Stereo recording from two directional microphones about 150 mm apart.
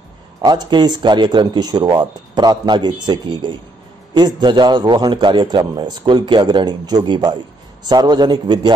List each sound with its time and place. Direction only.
0.4 s a man's voice: 30° right (ahead or behind)